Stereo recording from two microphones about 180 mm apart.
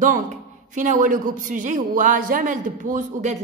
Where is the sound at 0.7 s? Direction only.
45° right (ahead or behind).